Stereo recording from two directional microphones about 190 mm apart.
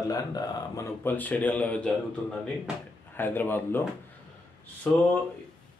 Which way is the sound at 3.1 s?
10° left (ahead or behind).